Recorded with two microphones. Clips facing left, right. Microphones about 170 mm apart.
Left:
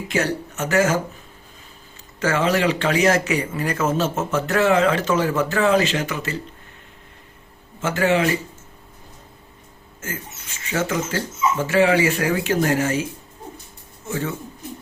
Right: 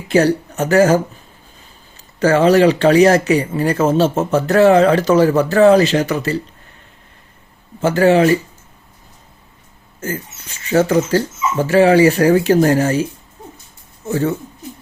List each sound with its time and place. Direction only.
0.1 s speech: 35° right (ahead or behind)
2.1 s speech: 35° right (ahead or behind)
7.8 s speech: 35° right (ahead or behind)
10.7 s speech: 35° right (ahead or behind)
14.1 s speech: 40° right (ahead or behind)